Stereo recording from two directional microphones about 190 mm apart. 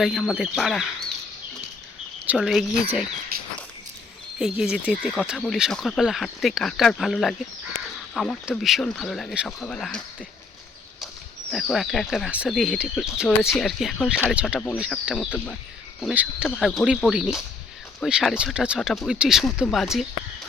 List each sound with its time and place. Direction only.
0.0 s speech: centre (ahead or behind)
2.2 s speech: 5° right (ahead or behind)
3.3 s walk: 50° right (ahead or behind)
4.4 s speech: 5° right (ahead or behind)
11.5 s speech: centre (ahead or behind)
14.3 s speech: 5° right (ahead or behind)